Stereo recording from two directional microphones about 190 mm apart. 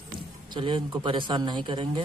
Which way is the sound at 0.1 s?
25° right (ahead or behind).